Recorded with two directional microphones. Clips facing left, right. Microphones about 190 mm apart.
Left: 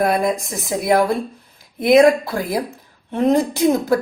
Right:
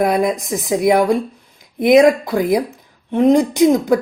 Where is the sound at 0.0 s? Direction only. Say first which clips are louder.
Right 2 dB; 15° right (ahead or behind).